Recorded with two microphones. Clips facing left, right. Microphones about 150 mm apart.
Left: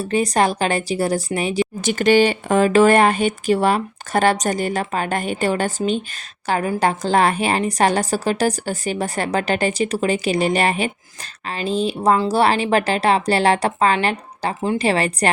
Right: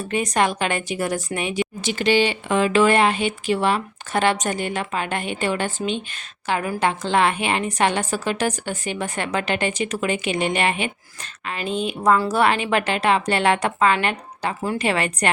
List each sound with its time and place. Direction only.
0.0 s a woman's voice: 35° left (ahead or behind)
1.9 s a woman's voice: 45° left (ahead or behind)